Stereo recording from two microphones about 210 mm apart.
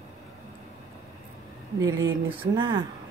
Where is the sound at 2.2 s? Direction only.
20° right (ahead or behind).